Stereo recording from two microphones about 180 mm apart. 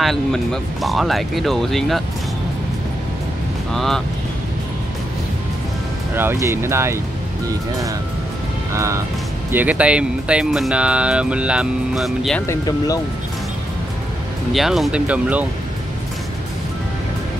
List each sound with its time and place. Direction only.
0.0 s speech: centre (ahead or behind)
3.7 s speech: centre (ahead or behind)
6.1 s speech: 15° right (ahead or behind)
8.7 s speech: 15° right (ahead or behind); by 12.4 s centre (ahead or behind)
12.4 s speech: 20° left (ahead or behind)
14.5 s speech: centre (ahead or behind)